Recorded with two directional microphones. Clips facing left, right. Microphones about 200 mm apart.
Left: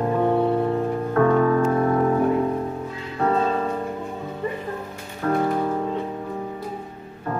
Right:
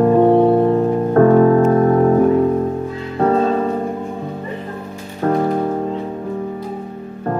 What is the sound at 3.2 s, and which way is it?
Music, 40° right (ahead or behind).